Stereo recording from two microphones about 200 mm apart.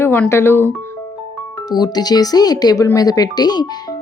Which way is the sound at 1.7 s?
20° left (ahead or behind).